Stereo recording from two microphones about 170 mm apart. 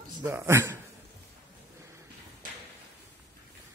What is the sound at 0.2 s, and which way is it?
Speech, 15° right (ahead or behind).